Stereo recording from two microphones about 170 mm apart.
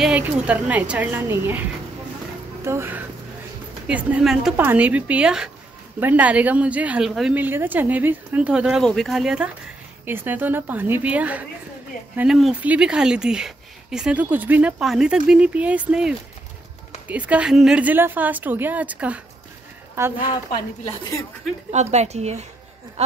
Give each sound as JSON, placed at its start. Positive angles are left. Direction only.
{"t": 0.0, "sound": "a woman's voice", "side_deg": -10}
{"t": 2.6, "sound": "a woman's voice", "side_deg": -15}
{"t": 20.5, "sound": "a woman's voice", "side_deg": 20}
{"t": 21.6, "sound": "speech", "side_deg": -40}